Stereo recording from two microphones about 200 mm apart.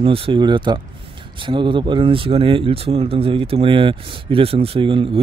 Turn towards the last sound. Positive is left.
turn(degrees=-25)  # may be behind; listen again after turning